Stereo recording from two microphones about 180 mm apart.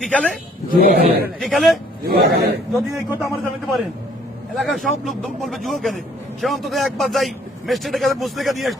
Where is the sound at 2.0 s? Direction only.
60° right (ahead or behind).